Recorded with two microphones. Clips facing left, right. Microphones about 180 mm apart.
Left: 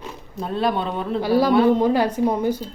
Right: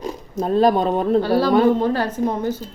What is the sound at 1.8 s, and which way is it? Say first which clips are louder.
Speech: left 2 dB; 15° left (ahead or behind).